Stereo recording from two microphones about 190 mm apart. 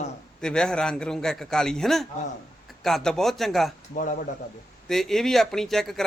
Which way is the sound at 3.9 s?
45° left (ahead or behind).